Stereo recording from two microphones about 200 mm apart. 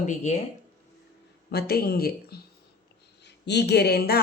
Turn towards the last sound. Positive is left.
turn(degrees=50)  # may be behind; listen again after turning